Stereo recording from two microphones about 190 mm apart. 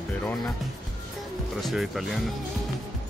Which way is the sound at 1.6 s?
Centre (ahead or behind).